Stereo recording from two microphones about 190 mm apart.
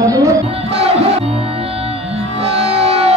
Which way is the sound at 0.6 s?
30° right (ahead or behind).